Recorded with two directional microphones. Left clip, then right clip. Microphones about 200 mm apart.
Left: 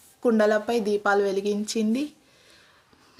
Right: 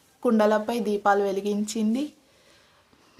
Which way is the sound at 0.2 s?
Centre (ahead or behind).